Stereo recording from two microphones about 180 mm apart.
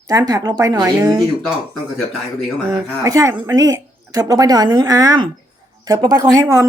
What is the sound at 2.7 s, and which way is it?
Speech, 15° right (ahead or behind).